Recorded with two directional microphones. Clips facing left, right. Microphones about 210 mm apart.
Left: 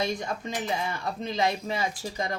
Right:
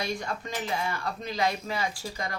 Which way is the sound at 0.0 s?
20° left (ahead or behind).